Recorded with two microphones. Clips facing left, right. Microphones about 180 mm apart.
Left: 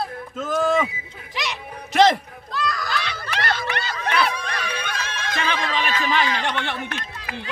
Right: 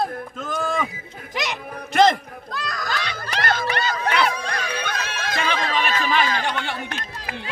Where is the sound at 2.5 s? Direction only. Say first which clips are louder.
Left 3 dB; 45° right (ahead or behind).